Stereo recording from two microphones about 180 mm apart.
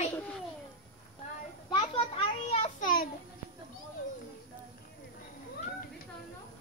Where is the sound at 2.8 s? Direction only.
55° left (ahead or behind).